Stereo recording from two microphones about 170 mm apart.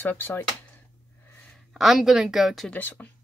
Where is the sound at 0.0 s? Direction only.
10° left (ahead or behind).